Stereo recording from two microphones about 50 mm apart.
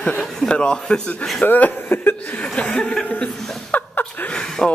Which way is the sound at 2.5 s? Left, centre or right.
Left.